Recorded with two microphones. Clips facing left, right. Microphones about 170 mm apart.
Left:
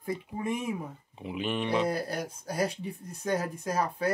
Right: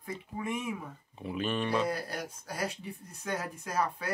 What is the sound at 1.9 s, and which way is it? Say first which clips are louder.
Speech: left 4 dB; 35° left (ahead or behind).